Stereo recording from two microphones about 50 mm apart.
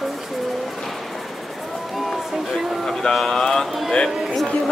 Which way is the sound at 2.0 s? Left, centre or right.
Centre.